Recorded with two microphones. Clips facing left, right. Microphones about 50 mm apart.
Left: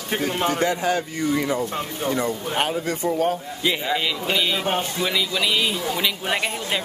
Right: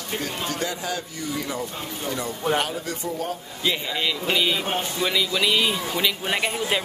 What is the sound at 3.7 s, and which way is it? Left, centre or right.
A man's voice, centre.